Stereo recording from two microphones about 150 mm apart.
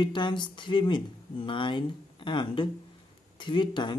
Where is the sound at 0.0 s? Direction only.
30° left (ahead or behind).